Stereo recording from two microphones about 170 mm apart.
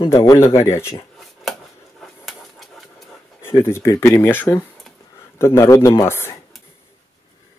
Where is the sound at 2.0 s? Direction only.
Centre (ahead or behind).